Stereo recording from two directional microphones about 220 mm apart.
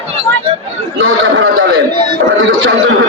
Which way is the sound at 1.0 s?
65° right (ahead or behind).